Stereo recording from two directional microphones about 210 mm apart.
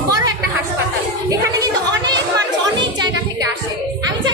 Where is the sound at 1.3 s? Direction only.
15° right (ahead or behind).